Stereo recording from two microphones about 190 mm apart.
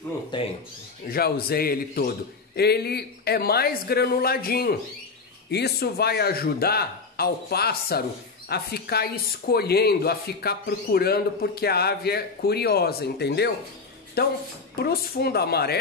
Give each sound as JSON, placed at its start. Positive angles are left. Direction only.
{"t": 0.3, "sound": "speech", "side_deg": 25}
{"t": 1.0, "sound": "a man's voice", "side_deg": 55}